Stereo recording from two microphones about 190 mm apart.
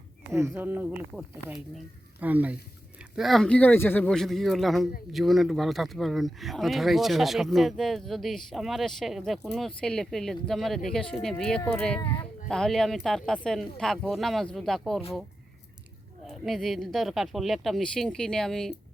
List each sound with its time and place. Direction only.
0.3 s speech: 15° right (ahead or behind); by 11.9 s 5° left (ahead or behind)
11.9 s speech: 25° left (ahead or behind)
12.2 s speech: 5° left (ahead or behind)
16.2 s speech: centre (ahead or behind)